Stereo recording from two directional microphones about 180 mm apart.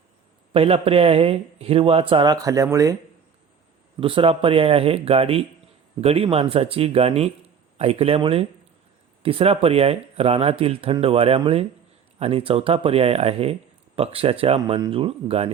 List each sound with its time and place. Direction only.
0.5 s speech: 30° right (ahead or behind)
4.0 s speech: 30° right (ahead or behind)